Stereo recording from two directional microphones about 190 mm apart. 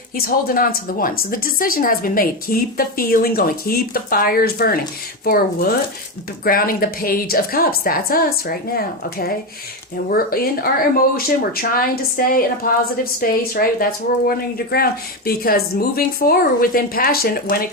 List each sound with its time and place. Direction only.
0.2 s a woman's voice: 50° left (ahead or behind)